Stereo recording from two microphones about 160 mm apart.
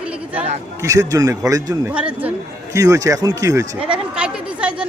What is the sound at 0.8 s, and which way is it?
Speech, 20° right (ahead or behind).